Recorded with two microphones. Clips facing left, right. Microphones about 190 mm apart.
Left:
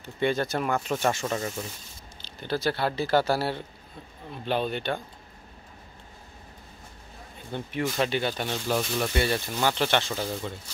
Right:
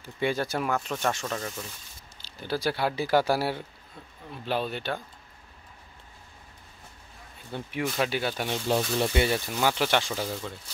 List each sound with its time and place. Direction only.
0.0 s speech: 10° right (ahead or behind)
0.7 s speech: 5° left (ahead or behind)
2.2 s speech: 10° right (ahead or behind)
7.5 s speech: centre (ahead or behind)
8.6 s speech: 20° right (ahead or behind)
10.2 s speech: 10° left (ahead or behind)